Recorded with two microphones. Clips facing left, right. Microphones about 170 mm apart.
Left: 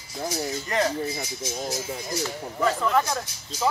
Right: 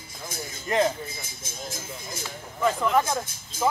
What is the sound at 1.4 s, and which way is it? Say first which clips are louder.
Speech: left 10 dB; 50° right (ahead or behind).